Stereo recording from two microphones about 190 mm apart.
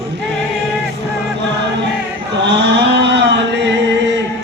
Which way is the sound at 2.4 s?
60° right (ahead or behind).